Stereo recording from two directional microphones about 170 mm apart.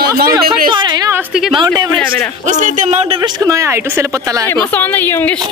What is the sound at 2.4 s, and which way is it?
Speech, 45° right (ahead or behind).